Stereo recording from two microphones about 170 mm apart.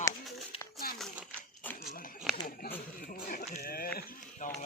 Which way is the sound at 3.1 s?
55° left (ahead or behind).